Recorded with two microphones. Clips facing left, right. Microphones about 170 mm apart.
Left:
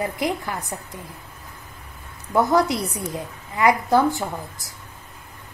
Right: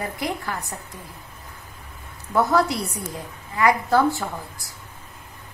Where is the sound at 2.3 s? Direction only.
20° left (ahead or behind).